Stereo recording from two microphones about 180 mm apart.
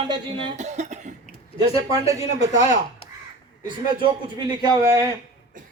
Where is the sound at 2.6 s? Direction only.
35° left (ahead or behind).